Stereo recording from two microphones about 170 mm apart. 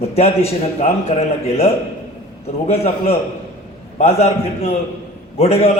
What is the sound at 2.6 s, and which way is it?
A man's voice, 35° left (ahead or behind).